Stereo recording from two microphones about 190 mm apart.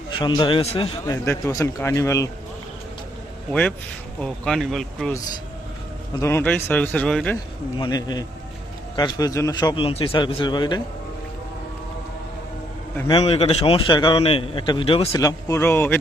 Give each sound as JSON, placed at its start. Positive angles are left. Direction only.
{"t": 0.1, "sound": "a man's voice", "side_deg": 25}
{"t": 1.0, "sound": "a man's voice", "side_deg": 15}
{"t": 3.5, "sound": "a man's voice", "side_deg": 5}
{"t": 6.1, "sound": "a man's voice", "side_deg": 15}
{"t": 7.8, "sound": "a man's voice", "side_deg": 20}
{"t": 13.1, "sound": "a man's voice", "side_deg": 30}
{"t": 15.1, "sound": "a man's voice", "side_deg": 20}